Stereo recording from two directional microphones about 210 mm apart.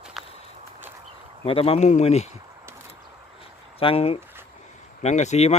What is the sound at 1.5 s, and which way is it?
Speech, 25° left (ahead or behind).